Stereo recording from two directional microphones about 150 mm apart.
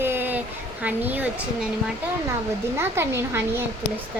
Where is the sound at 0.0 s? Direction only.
15° right (ahead or behind).